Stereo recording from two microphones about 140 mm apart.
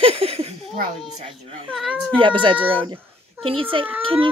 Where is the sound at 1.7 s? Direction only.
Centre (ahead or behind).